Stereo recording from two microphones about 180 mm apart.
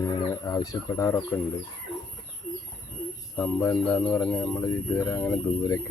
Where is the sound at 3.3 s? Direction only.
10° left (ahead or behind).